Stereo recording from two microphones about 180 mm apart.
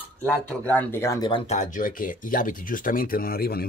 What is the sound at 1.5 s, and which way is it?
Speech, 45° left (ahead or behind).